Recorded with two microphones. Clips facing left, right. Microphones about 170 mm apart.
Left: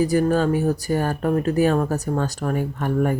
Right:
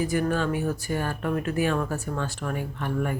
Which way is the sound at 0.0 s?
35° left (ahead or behind).